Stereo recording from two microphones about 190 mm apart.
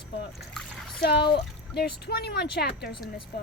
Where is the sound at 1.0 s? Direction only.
60° left (ahead or behind).